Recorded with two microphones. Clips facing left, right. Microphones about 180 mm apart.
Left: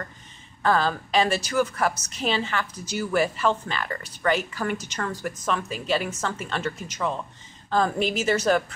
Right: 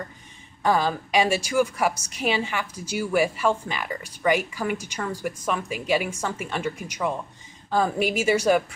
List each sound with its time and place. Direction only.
0.6 s a woman's voice: 15° right (ahead or behind)